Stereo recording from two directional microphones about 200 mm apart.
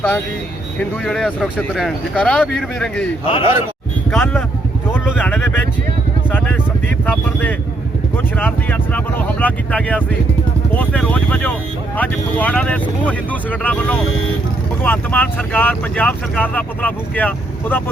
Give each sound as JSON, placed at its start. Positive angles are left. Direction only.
{"t": 0.8, "sound": "speech", "side_deg": 0}
{"t": 3.2, "sound": "a man's voice", "side_deg": 25}
{"t": 4.1, "sound": "speech", "side_deg": 5}
{"t": 6.8, "sound": "speech", "side_deg": 10}